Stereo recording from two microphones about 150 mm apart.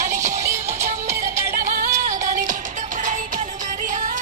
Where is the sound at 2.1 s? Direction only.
60° right (ahead or behind).